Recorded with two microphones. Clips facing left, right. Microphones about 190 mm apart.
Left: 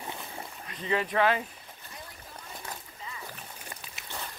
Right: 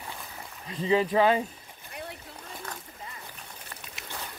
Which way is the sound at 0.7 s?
30° right (ahead or behind).